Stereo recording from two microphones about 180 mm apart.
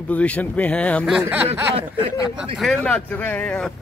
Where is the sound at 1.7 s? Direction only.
30° right (ahead or behind).